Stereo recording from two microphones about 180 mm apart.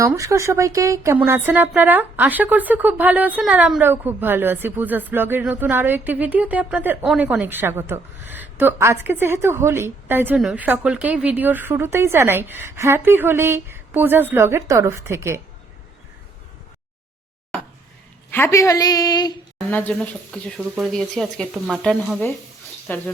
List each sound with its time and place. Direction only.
0.0 s speech: 15° right (ahead or behind)
18.3 s a woman's voice: 10° left (ahead or behind)
19.5 s speech: 5° left (ahead or behind)
20.6 s speech: 10° right (ahead or behind)
20.9 s speech: centre (ahead or behind)